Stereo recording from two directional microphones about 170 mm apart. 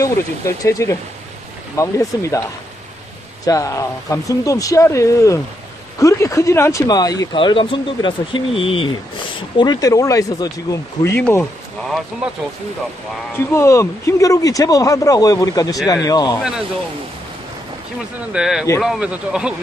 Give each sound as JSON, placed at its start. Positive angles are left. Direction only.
{"t": 0.0, "sound": "speech", "side_deg": 20}
{"t": 3.4, "sound": "speech", "side_deg": 20}
{"t": 13.5, "sound": "speech", "side_deg": 15}
{"t": 18.3, "sound": "speech", "side_deg": -5}